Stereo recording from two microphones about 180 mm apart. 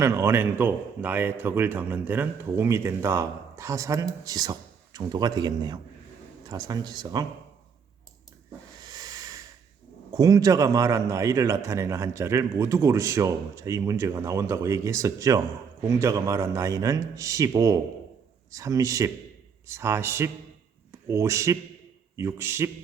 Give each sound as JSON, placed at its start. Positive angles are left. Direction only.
{"t": 0.0, "sound": "a man's voice", "side_deg": -15}
{"t": 8.8, "sound": "hiss", "side_deg": -20}
{"t": 10.1, "sound": "a man's voice", "side_deg": -20}